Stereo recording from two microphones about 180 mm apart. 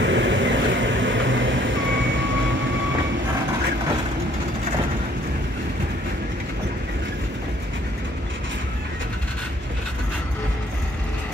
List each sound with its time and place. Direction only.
0.0 s vehicle: 80° right